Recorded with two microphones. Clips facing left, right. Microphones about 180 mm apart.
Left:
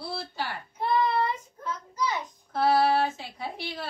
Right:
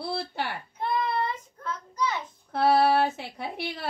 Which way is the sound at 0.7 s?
10° left (ahead or behind).